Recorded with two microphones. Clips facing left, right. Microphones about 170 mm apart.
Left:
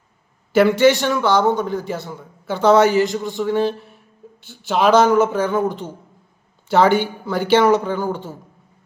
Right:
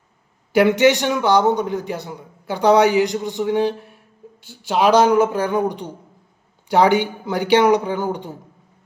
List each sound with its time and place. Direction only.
0.5 s a man's voice: 15° right (ahead or behind)